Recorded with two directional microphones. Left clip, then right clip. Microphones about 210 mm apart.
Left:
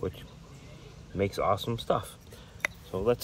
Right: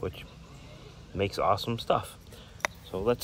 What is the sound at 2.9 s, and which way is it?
Speech, 15° right (ahead or behind).